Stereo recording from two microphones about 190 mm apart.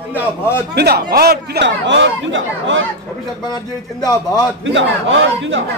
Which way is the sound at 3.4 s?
20° left (ahead or behind).